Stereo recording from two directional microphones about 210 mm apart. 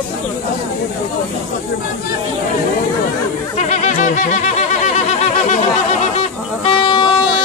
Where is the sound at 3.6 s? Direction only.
30° left (ahead or behind).